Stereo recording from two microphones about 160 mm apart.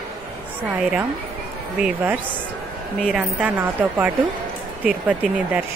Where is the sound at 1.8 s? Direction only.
10° right (ahead or behind).